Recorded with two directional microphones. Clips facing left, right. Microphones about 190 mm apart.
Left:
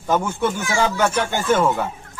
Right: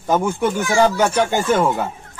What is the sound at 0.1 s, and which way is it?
Speech, 15° right (ahead or behind).